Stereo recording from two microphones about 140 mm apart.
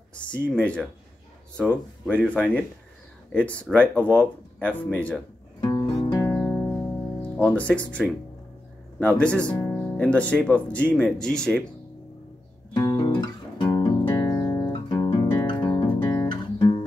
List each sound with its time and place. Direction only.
0.1 s speech: 10° left (ahead or behind)
5.6 s music: 25° left (ahead or behind)
6.3 s music: 10° left (ahead or behind)
7.4 s speech: 10° left (ahead or behind)
9.0 s speech: 10° left (ahead or behind)
12.7 s music: 25° left (ahead or behind)
16.0 s guitar: 20° left (ahead or behind)
16.3 s guitar: 30° left (ahead or behind)